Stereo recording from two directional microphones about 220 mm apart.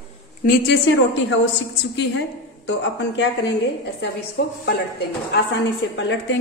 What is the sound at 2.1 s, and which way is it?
A woman's voice, 55° left (ahead or behind).